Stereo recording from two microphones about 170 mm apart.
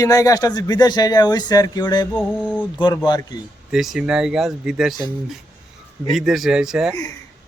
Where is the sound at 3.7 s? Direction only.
5° right (ahead or behind).